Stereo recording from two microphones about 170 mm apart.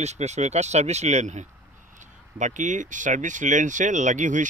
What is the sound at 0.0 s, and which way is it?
Speech, 40° right (ahead or behind).